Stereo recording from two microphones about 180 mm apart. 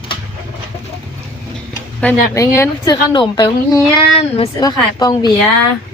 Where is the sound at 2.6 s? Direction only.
20° left (ahead or behind).